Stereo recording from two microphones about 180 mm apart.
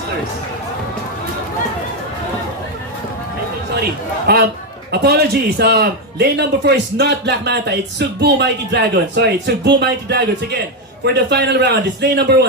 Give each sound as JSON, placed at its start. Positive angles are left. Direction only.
{"t": 4.3, "sound": "a man's voice", "side_deg": -65}